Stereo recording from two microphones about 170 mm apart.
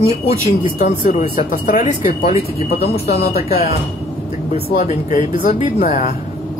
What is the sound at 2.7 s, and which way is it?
Speech, 65° left (ahead or behind).